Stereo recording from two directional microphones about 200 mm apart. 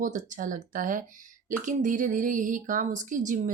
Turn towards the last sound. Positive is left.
turn(degrees=-40)  # may be behind; listen again after turning